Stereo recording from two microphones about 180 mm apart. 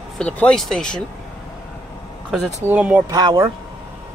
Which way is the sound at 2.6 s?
10° right (ahead or behind).